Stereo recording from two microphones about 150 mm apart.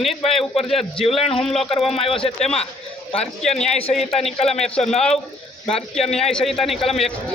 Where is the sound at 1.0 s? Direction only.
40° left (ahead or behind).